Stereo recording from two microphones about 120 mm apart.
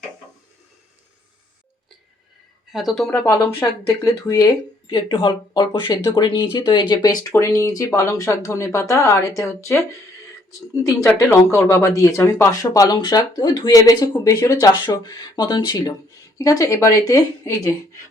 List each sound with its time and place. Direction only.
2.7 s speech: centre (ahead or behind)
3.6 s speech: 20° left (ahead or behind)
4.4 s speech: 40° left (ahead or behind); by 9.5 s 25° left (ahead or behind)
10.8 s speech: 25° left (ahead or behind); by 15.9 s 40° left (ahead or behind)
16.4 s speech: 25° left (ahead or behind)